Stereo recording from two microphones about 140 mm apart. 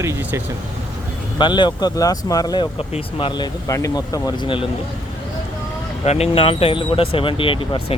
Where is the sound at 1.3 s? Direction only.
35° left (ahead or behind).